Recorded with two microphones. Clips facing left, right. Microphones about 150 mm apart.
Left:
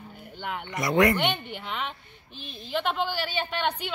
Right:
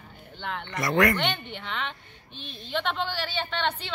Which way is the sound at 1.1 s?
10° left (ahead or behind).